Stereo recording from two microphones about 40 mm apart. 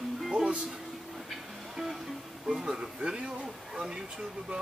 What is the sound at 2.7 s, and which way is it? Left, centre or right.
Speech, right.